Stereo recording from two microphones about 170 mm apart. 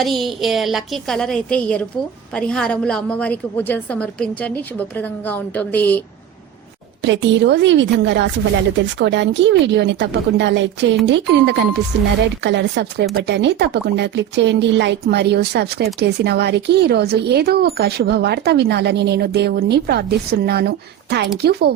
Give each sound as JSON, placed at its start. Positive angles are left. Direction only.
{"t": 0.0, "sound": "a woman's voice", "side_deg": 0}
{"t": 7.0, "sound": "a woman's voice", "side_deg": -90}